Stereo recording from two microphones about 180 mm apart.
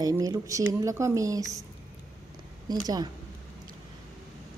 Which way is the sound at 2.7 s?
20° right (ahead or behind).